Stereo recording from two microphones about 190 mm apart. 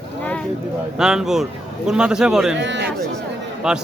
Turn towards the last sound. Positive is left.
turn(degrees=-5)  # may be behind; listen again after turning